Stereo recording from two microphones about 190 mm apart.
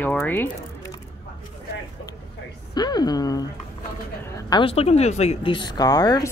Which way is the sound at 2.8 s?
20° left (ahead or behind).